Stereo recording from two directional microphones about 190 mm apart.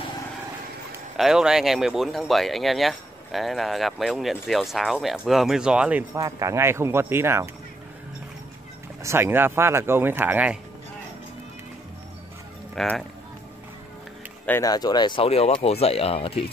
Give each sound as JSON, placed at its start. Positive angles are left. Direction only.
{"t": 1.1, "sound": "speech", "side_deg": 0}
{"t": 6.1, "sound": "speech", "side_deg": -15}
{"t": 9.0, "sound": "speech", "side_deg": -10}
{"t": 12.7, "sound": "speech", "side_deg": 0}
{"t": 14.4, "sound": "speech", "side_deg": 15}